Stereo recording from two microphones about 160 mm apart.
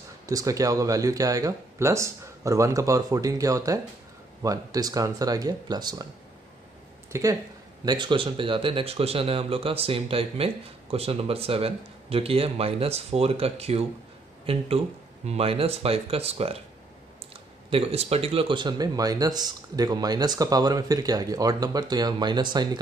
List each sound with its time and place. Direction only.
0.3 s speech: 20° right (ahead or behind)
7.1 s speech: 20° right (ahead or behind)